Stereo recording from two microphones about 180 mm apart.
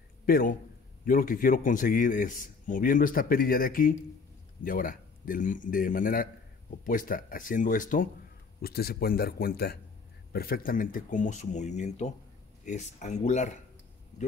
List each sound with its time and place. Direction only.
0.2 s a man's voice: 55° left (ahead or behind)
8.5 s a man's voice: 60° left (ahead or behind); by 13.6 s 40° left (ahead or behind)